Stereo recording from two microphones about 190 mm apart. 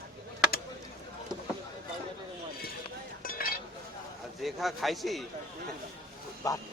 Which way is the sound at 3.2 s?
45° left (ahead or behind).